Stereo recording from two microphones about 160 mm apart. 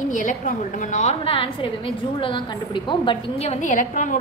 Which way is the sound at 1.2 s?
35° left (ahead or behind).